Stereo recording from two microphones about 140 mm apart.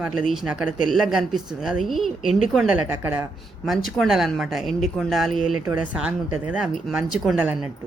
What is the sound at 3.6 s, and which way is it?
Speech, centre (ahead or behind).